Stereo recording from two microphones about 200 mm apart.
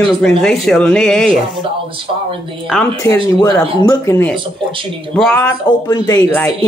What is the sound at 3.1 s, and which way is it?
Speech, 25° right (ahead or behind).